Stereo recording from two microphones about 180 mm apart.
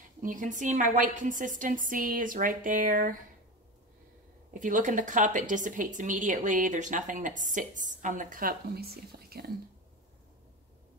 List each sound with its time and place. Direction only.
0.2 s a woman's voice: 45° right (ahead or behind)
4.6 s a woman's voice: 45° right (ahead or behind)